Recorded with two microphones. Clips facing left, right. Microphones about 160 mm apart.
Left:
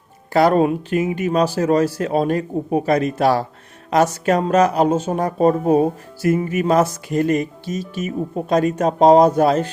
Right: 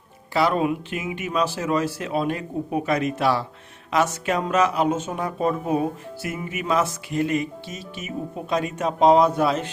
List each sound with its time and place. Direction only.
0.3 s speech: 45° left (ahead or behind)